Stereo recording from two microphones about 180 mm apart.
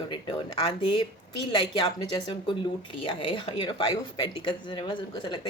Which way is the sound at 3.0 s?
30° left (ahead or behind).